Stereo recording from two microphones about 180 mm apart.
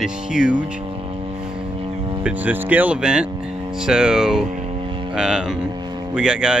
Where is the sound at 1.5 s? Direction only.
30° right (ahead or behind).